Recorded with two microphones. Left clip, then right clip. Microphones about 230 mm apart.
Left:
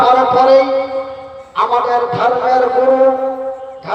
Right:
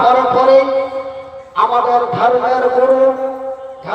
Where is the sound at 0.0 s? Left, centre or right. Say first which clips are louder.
Left 1 dB; left.